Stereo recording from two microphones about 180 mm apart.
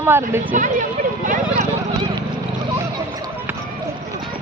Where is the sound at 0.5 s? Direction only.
45° right (ahead or behind).